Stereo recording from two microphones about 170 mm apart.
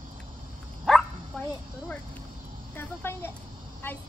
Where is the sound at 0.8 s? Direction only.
5° left (ahead or behind).